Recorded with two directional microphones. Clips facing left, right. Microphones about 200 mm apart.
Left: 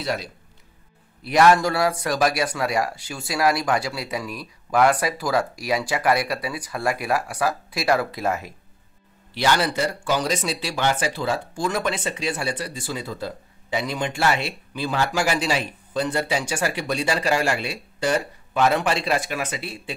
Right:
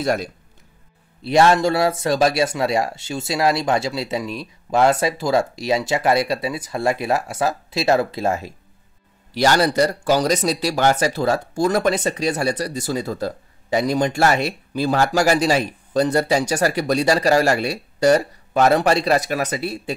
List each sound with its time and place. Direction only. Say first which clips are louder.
0.0 s speech: right 6 dB; 50° right (ahead or behind)
1.2 s a man's voice: right 2 dB; 25° right (ahead or behind)
9.3 s speech: right 5 dB; 40° right (ahead or behind)